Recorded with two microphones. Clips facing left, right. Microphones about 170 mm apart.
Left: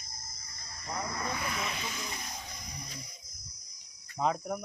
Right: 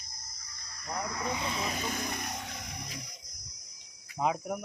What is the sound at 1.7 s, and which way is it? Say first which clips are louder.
Music: right 5 dB; 50° right (ahead or behind).